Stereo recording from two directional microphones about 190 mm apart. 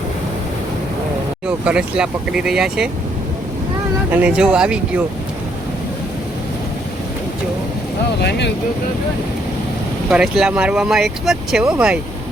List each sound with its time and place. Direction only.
1.5 s speech: 5° right (ahead or behind)
4.1 s speech: 5° right (ahead or behind)
8.2 s speech: 60° left (ahead or behind)
10.1 s speech: 5° right (ahead or behind)